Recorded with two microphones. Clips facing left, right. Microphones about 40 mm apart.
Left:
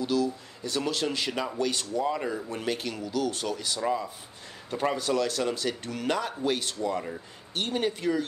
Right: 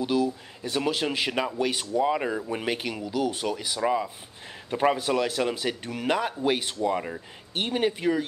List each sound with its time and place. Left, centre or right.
0.0 s a man's voice: right
3.8 s speech: right